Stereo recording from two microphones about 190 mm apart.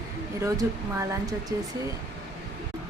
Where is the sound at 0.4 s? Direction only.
15° right (ahead or behind).